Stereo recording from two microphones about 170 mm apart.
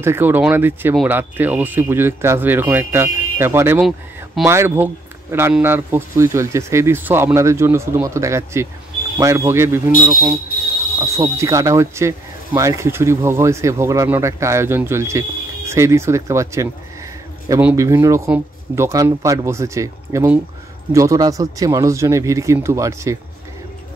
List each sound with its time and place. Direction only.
0.0 s speech: 15° right (ahead or behind)
17.7 s speech: 20° right (ahead or behind)